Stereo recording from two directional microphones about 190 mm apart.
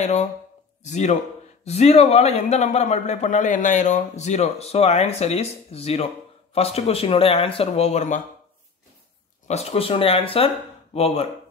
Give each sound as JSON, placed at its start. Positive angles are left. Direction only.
{"t": 0.0, "sound": "a man's voice", "side_deg": 40}
{"t": 9.5, "sound": "a man's voice", "side_deg": 35}